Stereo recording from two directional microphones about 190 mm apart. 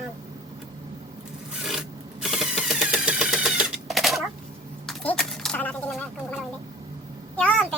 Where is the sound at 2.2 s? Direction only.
Centre (ahead or behind).